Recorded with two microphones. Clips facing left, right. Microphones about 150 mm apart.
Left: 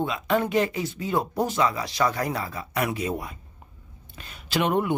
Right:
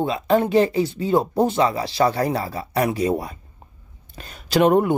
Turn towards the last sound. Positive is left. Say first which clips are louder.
# right 8 dB
turn(degrees=-40)  # may be behind; listen again after turning